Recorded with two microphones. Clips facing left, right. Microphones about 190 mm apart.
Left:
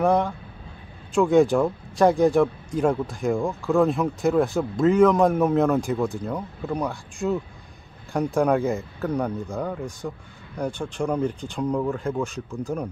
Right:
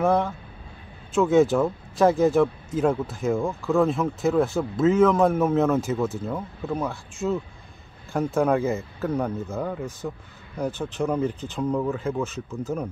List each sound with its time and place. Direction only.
0.0 s speech: centre (ahead or behind)